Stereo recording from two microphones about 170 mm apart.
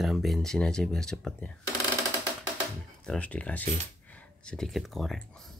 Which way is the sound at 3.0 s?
5° left (ahead or behind).